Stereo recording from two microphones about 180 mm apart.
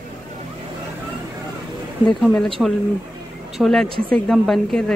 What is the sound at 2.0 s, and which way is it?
Speech, 5° left (ahead or behind).